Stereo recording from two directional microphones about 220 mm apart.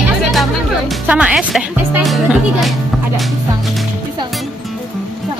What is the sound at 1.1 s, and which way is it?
Speech, 5° right (ahead or behind).